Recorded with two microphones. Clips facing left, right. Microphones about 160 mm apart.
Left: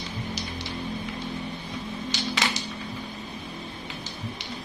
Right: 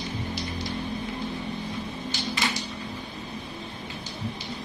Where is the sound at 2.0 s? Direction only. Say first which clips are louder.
Left 1 dB; 90° left.